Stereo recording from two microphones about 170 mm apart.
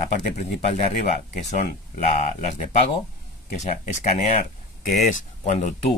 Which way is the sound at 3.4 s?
45° left (ahead or behind).